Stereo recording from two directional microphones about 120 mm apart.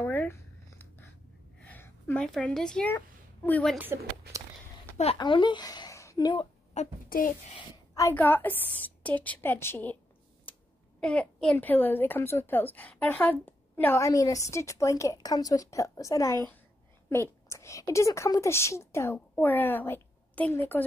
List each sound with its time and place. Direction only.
0.0 s a sound: 15° left (ahead or behind)
2.2 s a woman's voice: 5° left (ahead or behind)
3.7 s speech: 15° right (ahead or behind)
5.1 s a woman's voice: 45° left (ahead or behind)
6.8 s a child's voice: 75° left (ahead or behind)
8.1 s a woman's voice: 15° left (ahead or behind)
11.0 s a child's voice: 5° left (ahead or behind)
13.9 s a woman's voice: 30° left (ahead or behind)